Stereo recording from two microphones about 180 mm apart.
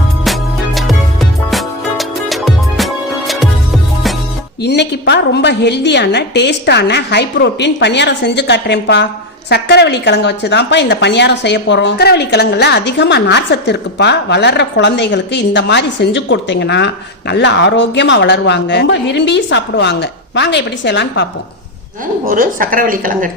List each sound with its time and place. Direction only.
0.3 s music: centre (ahead or behind)
4.6 s speech: 70° left (ahead or behind)
22.2 s a woman's voice: 50° right (ahead or behind)